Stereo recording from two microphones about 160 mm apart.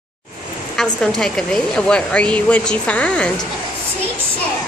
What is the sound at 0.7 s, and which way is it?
A woman's voice, 5° left (ahead or behind).